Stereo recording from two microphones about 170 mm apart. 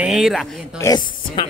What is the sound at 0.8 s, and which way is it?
Speech, 20° left (ahead or behind).